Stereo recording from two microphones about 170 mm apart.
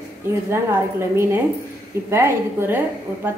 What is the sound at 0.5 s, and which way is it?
A woman's voice, 15° right (ahead or behind).